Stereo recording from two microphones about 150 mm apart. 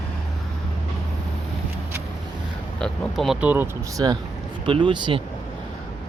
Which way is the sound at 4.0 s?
30° right (ahead or behind).